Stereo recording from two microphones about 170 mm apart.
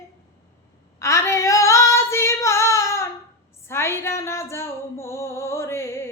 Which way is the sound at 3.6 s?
15° left (ahead or behind).